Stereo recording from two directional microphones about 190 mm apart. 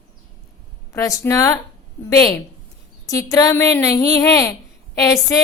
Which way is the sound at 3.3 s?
15° left (ahead or behind).